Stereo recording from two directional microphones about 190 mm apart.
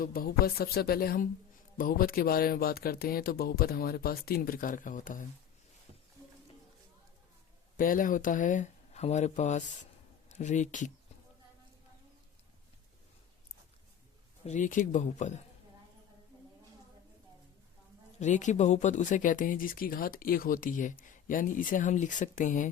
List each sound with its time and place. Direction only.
0.0 s speech: 50° left (ahead or behind)
7.8 s speech: 45° left (ahead or behind)
14.4 s speech: 40° left (ahead or behind)
18.2 s speech: 40° left (ahead or behind)